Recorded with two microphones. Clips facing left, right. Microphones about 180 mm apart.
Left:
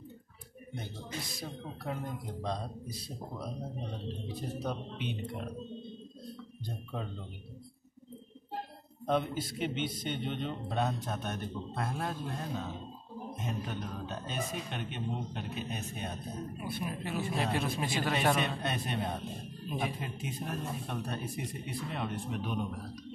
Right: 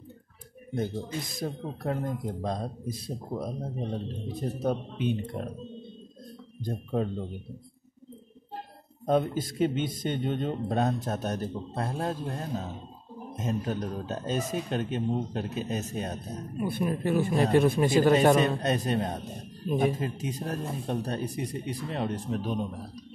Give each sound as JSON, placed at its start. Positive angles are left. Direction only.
{"t": 0.7, "sound": "a man's voice", "side_deg": -45}
{"t": 4.6, "sound": "a man's voice", "side_deg": -50}
{"t": 6.6, "sound": "a man's voice", "side_deg": -50}
{"t": 9.0, "sound": "a man's voice", "side_deg": -45}
{"t": 16.6, "sound": "a man's voice", "side_deg": -50}